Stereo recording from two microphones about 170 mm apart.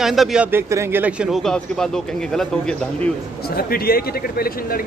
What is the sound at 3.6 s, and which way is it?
A man's voice, 60° left (ahead or behind).